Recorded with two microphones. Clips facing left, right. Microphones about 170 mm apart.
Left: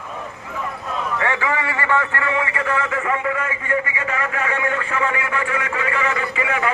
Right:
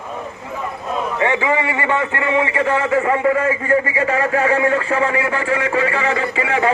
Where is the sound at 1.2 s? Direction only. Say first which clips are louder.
Right 6 dB; 20° right (ahead or behind).